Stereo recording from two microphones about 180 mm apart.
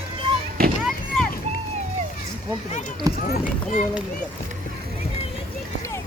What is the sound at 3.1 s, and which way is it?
Speech, 20° right (ahead or behind).